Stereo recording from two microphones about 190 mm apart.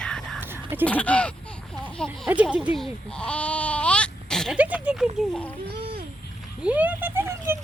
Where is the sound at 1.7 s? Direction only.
5° left (ahead or behind).